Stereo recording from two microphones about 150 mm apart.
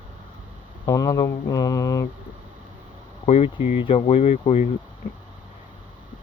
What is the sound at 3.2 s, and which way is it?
Speech, 40° left (ahead or behind).